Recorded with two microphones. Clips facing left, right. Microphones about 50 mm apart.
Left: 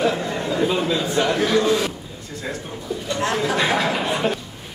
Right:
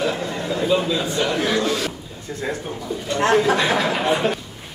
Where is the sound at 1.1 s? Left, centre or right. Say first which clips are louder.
Left 4 dB; left.